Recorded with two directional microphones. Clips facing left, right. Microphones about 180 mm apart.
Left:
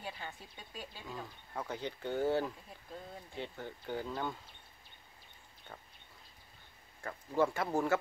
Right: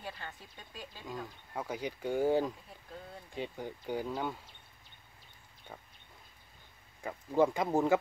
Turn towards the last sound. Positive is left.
turn(degrees=-15)  # may be behind; listen again after turning